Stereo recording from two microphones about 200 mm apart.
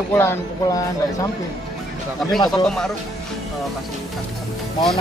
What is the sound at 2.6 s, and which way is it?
Speech, 5° left (ahead or behind).